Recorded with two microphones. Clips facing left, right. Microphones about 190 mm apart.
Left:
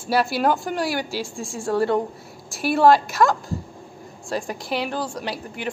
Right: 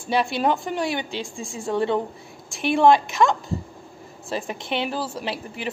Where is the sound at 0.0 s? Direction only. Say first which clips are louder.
Left 1 dB; 5° left (ahead or behind).